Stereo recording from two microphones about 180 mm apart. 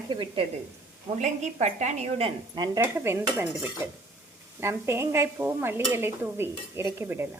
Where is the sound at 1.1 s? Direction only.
40° right (ahead or behind); by 2.8 s 25° right (ahead or behind).